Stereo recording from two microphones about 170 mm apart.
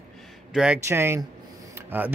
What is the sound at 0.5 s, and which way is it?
Speech, 10° right (ahead or behind).